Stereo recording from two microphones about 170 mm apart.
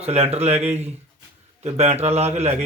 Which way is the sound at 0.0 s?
40° right (ahead or behind).